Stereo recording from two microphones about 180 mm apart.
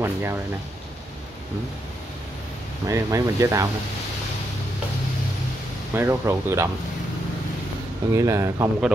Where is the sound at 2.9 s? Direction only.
15° right (ahead or behind).